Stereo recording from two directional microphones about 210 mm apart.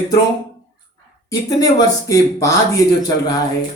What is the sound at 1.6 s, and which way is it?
Speech, 15° left (ahead or behind).